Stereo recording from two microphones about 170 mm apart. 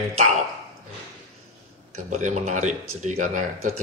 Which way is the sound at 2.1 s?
45° right (ahead or behind).